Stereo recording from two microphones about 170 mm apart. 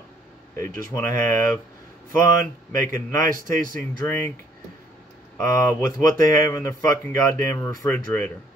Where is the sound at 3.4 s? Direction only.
55° right (ahead or behind).